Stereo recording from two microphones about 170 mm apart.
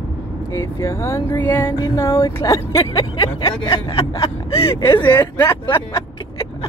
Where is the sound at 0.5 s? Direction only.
15° left (ahead or behind).